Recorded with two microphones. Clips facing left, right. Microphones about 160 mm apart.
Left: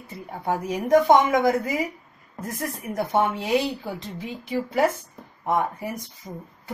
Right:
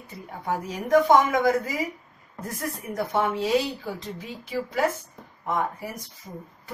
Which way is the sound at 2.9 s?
25° left (ahead or behind).